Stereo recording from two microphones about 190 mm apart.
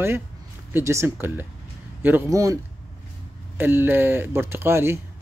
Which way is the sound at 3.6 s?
10° right (ahead or behind).